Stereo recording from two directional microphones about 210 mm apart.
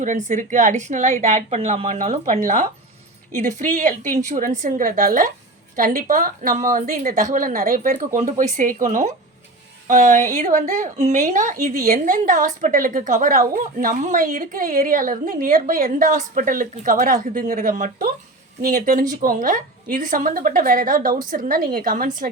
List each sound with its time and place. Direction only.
0.0 s a woman's voice: 35° right (ahead or behind)